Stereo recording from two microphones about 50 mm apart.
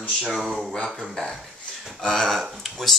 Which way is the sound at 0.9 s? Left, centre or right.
Centre.